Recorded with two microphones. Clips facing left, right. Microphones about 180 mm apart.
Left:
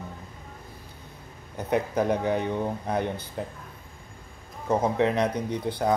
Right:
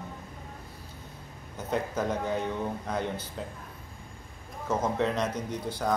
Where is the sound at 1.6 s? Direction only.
65° left (ahead or behind).